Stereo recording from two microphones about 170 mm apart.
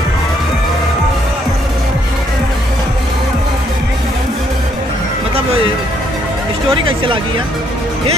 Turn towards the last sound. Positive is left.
turn(degrees=-30)  # may be behind; listen again after turning